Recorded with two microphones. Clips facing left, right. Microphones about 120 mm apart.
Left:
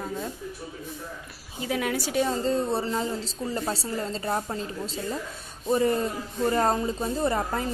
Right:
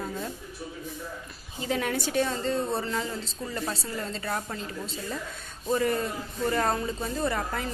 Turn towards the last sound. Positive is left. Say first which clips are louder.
# left 3 dB
turn(degrees=30)  # may be behind; listen again after turning